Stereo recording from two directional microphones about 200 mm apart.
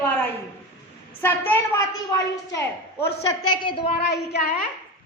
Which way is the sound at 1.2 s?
15° left (ahead or behind).